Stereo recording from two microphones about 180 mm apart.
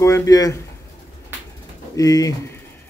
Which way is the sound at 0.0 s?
15° left (ahead or behind).